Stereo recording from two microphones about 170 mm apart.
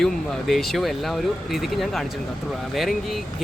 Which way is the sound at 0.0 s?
Centre (ahead or behind).